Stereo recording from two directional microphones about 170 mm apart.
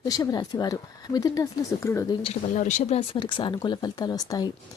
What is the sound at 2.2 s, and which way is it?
Speech, 45° left (ahead or behind).